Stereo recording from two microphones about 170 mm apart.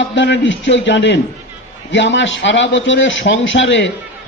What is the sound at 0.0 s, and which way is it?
A man's voice, 90° left.